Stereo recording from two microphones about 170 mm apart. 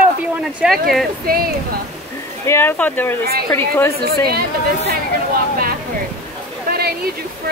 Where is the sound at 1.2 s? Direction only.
60° right (ahead or behind).